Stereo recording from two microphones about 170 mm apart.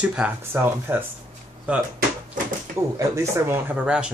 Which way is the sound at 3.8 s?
5° right (ahead or behind).